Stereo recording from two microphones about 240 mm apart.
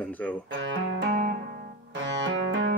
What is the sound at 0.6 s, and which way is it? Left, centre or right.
Music, right.